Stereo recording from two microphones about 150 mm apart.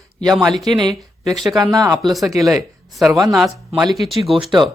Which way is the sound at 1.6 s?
20° right (ahead or behind).